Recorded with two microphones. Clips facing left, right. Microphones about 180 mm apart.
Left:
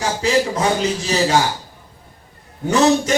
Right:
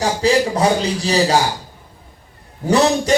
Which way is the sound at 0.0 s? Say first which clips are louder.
Right 2 dB; 35° right (ahead or behind).